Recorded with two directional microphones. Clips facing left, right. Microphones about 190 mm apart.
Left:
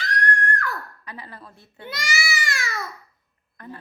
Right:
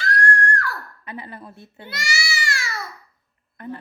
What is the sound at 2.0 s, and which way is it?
Crying, 20° left (ahead or behind).